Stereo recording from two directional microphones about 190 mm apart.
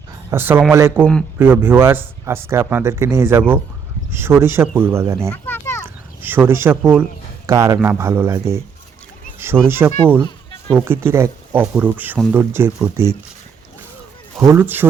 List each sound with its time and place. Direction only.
0.3 s speech: 10° right (ahead or behind)
5.3 s children playing: 10° left (ahead or behind)
5.8 s speech: 10° right (ahead or behind)
9.6 s speech: 10° right (ahead or behind)
14.4 s speech: 10° right (ahead or behind)